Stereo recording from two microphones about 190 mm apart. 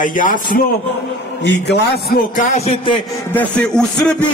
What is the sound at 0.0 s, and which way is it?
Speech, 45° left (ahead or behind).